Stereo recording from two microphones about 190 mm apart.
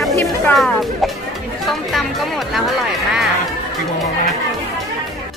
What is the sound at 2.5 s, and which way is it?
Speech, centre (ahead or behind).